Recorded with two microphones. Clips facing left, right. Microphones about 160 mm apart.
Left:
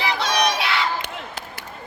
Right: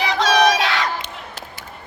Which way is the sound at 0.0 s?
90° right.